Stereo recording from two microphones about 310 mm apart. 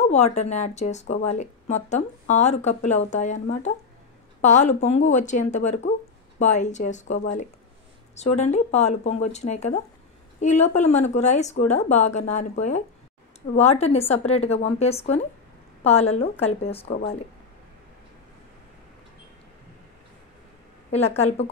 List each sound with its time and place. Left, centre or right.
0.1 s speech: left
21.2 s speech: left